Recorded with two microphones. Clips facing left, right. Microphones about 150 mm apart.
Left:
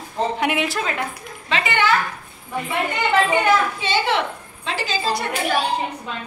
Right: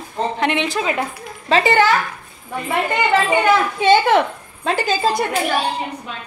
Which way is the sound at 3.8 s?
50° right (ahead or behind).